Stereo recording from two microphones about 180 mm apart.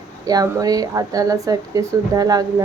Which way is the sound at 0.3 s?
20° right (ahead or behind).